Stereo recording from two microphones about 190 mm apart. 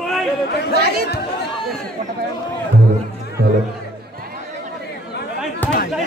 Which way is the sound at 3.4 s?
60° right (ahead or behind).